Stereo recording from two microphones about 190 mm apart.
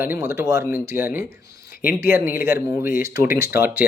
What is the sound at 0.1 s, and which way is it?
Speech, 15° right (ahead or behind).